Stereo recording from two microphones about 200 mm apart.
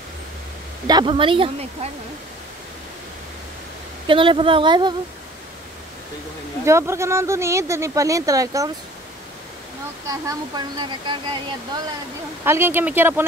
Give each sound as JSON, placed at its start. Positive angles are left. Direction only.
{"t": 0.8, "sound": "speech", "side_deg": -20}
{"t": 4.1, "sound": "speech", "side_deg": -25}
{"t": 6.6, "sound": "speech", "side_deg": -15}
{"t": 10.0, "sound": "speech", "side_deg": -20}
{"t": 12.4, "sound": "speech", "side_deg": -10}